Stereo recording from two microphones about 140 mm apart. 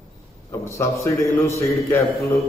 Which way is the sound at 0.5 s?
20° left (ahead or behind).